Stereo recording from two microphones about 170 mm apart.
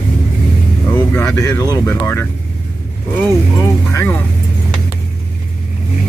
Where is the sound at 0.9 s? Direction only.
15° left (ahead or behind).